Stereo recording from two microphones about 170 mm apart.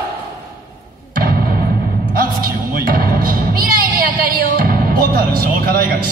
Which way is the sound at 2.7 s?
55° right (ahead or behind).